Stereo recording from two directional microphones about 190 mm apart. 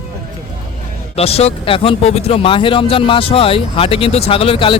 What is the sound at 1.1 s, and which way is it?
Speech, 30° left (ahead or behind).